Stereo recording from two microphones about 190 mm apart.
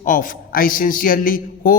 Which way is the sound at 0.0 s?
45° left (ahead or behind).